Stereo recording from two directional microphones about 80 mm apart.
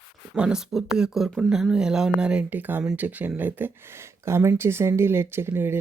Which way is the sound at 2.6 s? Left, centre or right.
Right.